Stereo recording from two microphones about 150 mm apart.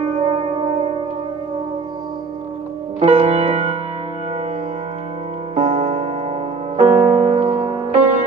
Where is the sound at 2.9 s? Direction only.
45° right (ahead or behind).